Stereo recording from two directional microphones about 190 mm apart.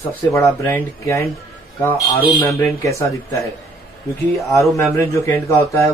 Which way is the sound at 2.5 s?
15° left (ahead or behind).